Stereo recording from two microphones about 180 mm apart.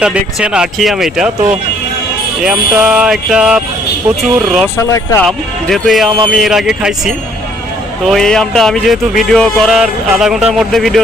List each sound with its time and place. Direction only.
0.0 s speech: 5° right (ahead or behind)
4.8 s speech: 15° left (ahead or behind)
5.2 s speech: centre (ahead or behind)